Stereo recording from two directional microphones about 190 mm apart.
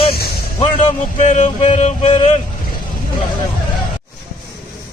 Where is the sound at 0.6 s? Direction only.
35° left (ahead or behind).